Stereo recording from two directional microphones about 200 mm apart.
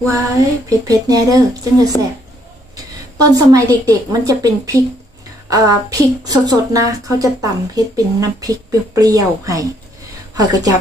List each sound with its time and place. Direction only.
0.1 s speech: 15° right (ahead or behind)
3.2 s speech: 20° right (ahead or behind)